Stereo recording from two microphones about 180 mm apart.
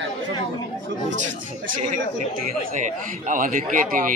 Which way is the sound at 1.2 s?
45° right (ahead or behind).